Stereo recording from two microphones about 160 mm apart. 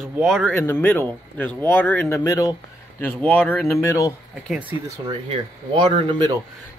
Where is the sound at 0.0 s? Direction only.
Centre (ahead or behind).